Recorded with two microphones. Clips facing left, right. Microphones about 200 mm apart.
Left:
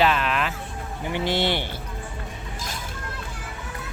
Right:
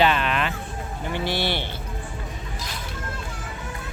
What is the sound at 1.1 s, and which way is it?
Speech, 20° left (ahead or behind).